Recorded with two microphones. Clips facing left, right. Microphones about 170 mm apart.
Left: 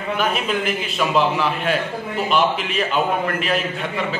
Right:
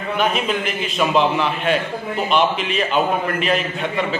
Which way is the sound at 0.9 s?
5° left (ahead or behind).